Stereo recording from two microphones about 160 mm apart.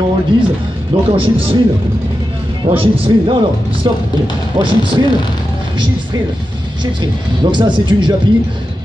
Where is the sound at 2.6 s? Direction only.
35° right (ahead or behind).